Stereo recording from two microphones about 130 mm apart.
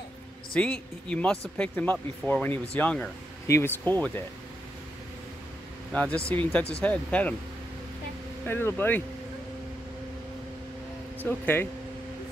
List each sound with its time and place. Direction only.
0.6 s speech: 10° left (ahead or behind)
5.9 s speech: 10° left (ahead or behind)
8.5 s speech: 15° left (ahead or behind)
11.2 s speech: 15° left (ahead or behind)